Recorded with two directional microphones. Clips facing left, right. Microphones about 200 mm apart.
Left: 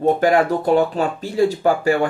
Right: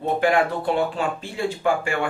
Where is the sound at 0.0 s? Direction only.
40° left (ahead or behind).